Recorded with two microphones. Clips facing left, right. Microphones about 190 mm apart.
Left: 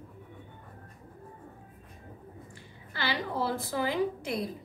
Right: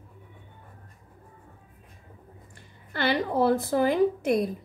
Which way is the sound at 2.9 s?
50° right (ahead or behind).